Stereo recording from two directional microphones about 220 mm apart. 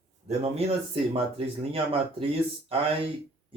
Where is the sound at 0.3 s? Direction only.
30° right (ahead or behind).